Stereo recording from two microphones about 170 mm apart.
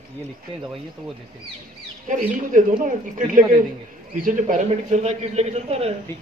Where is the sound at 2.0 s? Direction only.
50° right (ahead or behind).